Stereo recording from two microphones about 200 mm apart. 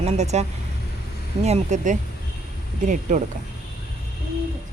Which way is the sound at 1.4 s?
35° right (ahead or behind).